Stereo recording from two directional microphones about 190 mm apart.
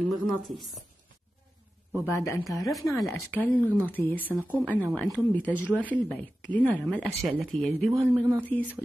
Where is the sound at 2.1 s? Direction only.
15° left (ahead or behind).